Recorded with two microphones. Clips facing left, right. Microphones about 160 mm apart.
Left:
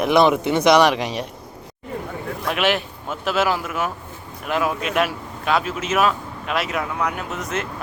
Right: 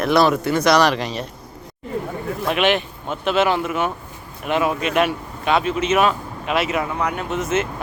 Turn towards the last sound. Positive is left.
turn(degrees=0)  # may be behind; listen again after turning